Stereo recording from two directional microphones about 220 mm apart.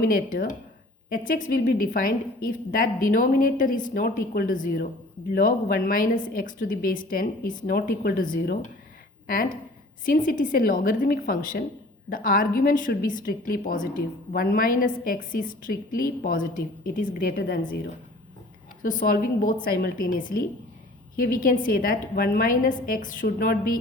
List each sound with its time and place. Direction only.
0.0 s a woman's voice: 40° left (ahead or behind)
18.8 s a woman's voice: 40° left (ahead or behind)